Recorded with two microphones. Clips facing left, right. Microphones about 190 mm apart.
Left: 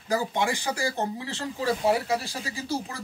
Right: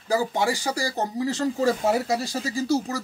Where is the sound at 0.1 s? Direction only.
35° right (ahead or behind).